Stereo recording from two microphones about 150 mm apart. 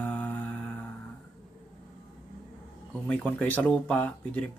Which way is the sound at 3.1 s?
10° left (ahead or behind).